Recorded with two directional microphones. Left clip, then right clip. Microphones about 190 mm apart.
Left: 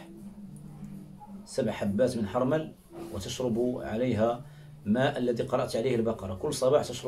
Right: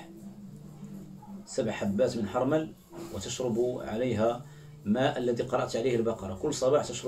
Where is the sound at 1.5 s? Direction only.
10° left (ahead or behind).